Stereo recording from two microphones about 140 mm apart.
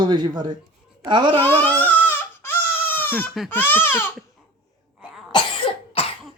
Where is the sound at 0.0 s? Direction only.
30° right (ahead or behind).